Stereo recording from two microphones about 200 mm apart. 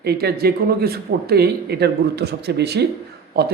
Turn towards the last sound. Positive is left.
turn(degrees=-55)  # may be behind; listen again after turning